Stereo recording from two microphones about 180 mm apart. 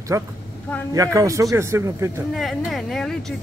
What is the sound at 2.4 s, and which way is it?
Speech, centre (ahead or behind).